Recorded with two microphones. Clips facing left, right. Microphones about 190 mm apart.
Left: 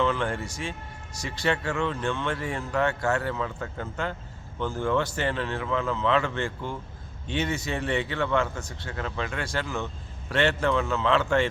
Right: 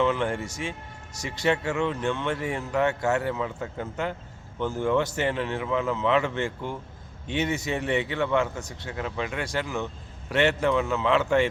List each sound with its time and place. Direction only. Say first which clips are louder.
0.0 s speech: right 2 dB; 20° right (ahead or behind)